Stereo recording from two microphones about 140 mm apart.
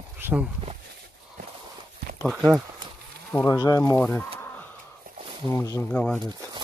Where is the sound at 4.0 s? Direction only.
10° left (ahead or behind).